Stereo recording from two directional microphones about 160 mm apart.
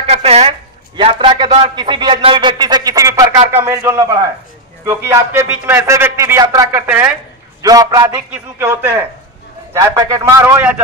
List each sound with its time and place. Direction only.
0.0 s a man's voice: 40° right (ahead or behind); by 8.1 s 25° right (ahead or behind)
8.3 s a man's voice: 10° right (ahead or behind)